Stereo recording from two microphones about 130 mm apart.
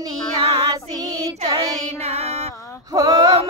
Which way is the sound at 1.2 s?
25° right (ahead or behind).